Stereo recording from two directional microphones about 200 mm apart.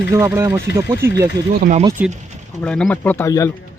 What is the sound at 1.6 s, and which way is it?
Speech, 35° right (ahead or behind).